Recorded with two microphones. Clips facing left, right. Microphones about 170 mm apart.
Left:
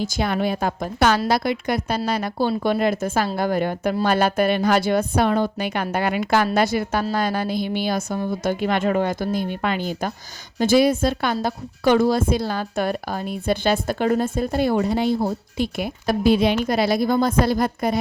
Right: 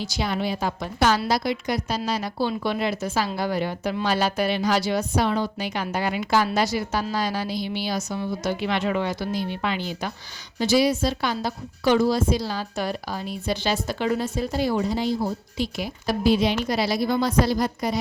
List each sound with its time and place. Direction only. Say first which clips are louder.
0.0 s a woman's voice: left 4 dB; 50° left (ahead or behind)